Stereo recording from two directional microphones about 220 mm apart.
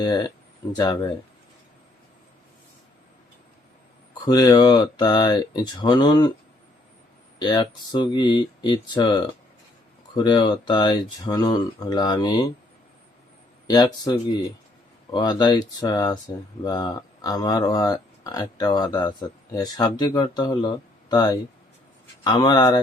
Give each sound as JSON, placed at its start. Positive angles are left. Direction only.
{"t": 0.0, "sound": "speech", "side_deg": 15}
{"t": 4.3, "sound": "speech", "side_deg": 15}
{"t": 7.3, "sound": "speech", "side_deg": 20}
{"t": 13.7, "sound": "speech", "side_deg": 20}